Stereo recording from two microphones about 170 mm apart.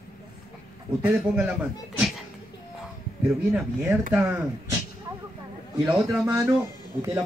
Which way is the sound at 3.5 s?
10° right (ahead or behind).